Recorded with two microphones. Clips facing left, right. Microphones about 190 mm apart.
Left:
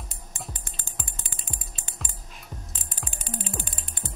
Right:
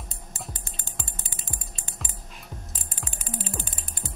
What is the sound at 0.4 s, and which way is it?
Music, centre (ahead or behind).